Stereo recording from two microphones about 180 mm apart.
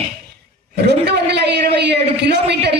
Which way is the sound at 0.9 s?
65° right (ahead or behind).